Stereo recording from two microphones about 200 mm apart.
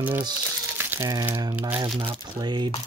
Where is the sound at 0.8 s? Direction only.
15° right (ahead or behind).